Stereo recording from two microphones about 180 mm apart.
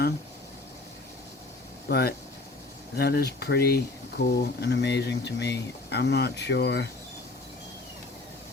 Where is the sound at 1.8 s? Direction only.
60° left (ahead or behind).